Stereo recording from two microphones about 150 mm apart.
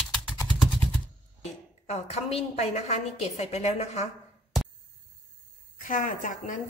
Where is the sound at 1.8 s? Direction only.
45° left (ahead or behind).